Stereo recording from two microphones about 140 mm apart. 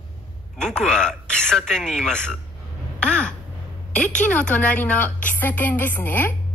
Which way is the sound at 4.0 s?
10° left (ahead or behind).